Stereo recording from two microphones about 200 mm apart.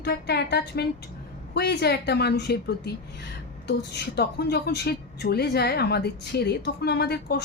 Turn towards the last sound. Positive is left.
turn(degrees=55)  # may be behind; listen again after turning